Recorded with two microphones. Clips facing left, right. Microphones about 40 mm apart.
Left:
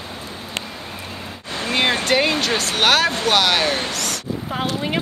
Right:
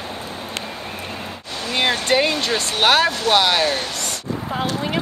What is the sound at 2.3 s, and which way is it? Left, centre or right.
Speech, centre.